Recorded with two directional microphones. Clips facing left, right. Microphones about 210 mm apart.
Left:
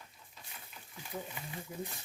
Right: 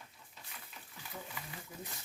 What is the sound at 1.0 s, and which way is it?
Wild animals, 20° left (ahead or behind).